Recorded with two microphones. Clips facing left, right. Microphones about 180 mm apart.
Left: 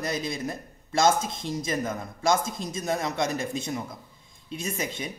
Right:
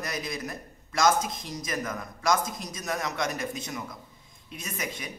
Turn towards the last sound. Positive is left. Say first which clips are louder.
# left 4 dB
turn(degrees=25)  # may be behind; listen again after turning